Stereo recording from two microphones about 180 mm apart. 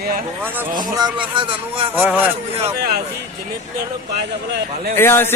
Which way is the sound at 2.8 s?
55° right (ahead or behind).